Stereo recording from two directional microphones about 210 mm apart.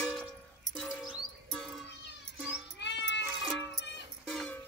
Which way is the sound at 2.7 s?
55° left (ahead or behind).